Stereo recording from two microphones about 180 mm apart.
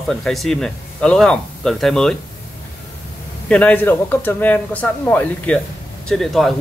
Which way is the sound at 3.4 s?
5° left (ahead or behind).